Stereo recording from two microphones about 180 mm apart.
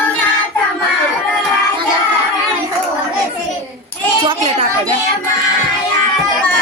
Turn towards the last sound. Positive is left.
turn(degrees=-35)  # may be behind; listen again after turning